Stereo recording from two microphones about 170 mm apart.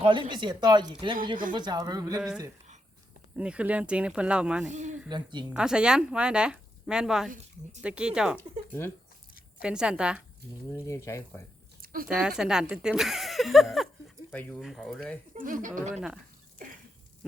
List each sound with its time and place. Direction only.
0.0 s speech: 30° right (ahead or behind)
3.3 s speech: 5° right (ahead or behind)
4.7 s speech: 45° right (ahead or behind)
5.0 s speech: 25° right (ahead or behind)
5.5 s speech: 5° right (ahead or behind)
8.4 s speech: 15° left (ahead or behind)
9.6 s speech: 5° right (ahead or behind)
10.8 s speech: 15° left (ahead or behind)
11.8 s a sound: 60° right (ahead or behind)
12.0 s speech: 5° right (ahead or behind)
15.4 s speech: 50° right (ahead or behind)